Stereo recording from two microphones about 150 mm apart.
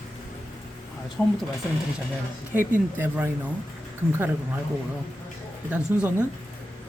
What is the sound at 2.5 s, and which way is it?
Speech, 15° right (ahead or behind).